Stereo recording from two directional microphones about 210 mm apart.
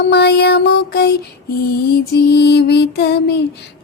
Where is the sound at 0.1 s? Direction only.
50° left (ahead or behind).